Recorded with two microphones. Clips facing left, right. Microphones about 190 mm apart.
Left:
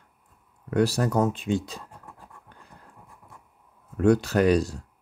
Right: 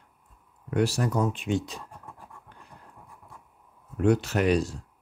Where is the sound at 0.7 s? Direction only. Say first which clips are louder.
Left 3 dB; 35° left (ahead or behind).